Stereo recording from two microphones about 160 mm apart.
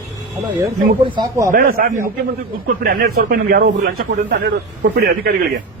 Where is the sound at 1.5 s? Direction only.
60° right (ahead or behind).